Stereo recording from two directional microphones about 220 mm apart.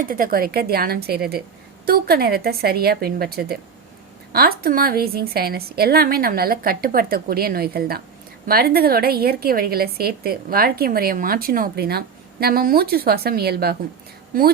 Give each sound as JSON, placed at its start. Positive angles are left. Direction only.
{"t": 0.0, "sound": "a woman's voice", "side_deg": -40}